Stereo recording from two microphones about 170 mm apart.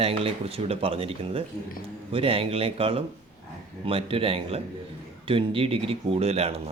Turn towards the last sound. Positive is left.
turn(degrees=-35)  # may be behind; listen again after turning